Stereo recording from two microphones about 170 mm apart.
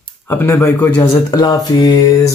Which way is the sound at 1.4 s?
20° left (ahead or behind).